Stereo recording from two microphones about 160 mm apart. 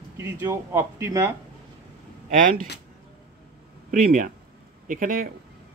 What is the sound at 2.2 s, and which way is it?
Speech, 55° right (ahead or behind).